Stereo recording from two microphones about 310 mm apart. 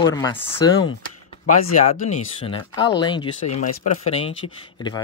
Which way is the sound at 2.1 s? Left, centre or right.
Centre.